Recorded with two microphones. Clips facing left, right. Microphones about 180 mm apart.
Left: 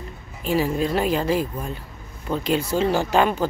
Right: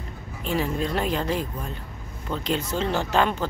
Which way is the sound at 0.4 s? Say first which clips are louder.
Left 4 dB; 5° left (ahead or behind).